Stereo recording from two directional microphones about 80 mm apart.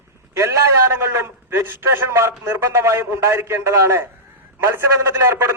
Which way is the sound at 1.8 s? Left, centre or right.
Right.